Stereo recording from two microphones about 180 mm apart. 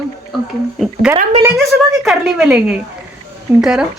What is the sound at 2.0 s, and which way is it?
A woman's voice, 5° right (ahead or behind).